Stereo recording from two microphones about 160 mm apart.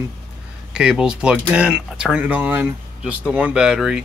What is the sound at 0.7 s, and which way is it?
Speech, 5° right (ahead or behind).